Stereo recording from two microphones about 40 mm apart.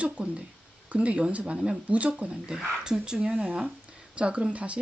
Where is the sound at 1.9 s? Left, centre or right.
Right.